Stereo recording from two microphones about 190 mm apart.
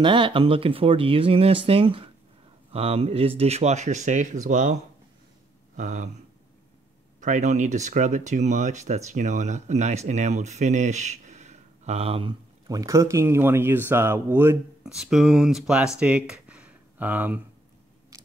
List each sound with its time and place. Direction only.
0.0 s speech: 25° right (ahead or behind); by 4.7 s 40° right (ahead or behind)
5.8 s speech: 40° right (ahead or behind)
7.2 s speech: 40° right (ahead or behind); by 15.9 s 5° right (ahead or behind)
16.0 s a sound: 5° right (ahead or behind)